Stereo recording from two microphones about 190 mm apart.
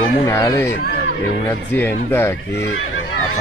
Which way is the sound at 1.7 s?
10° left (ahead or behind).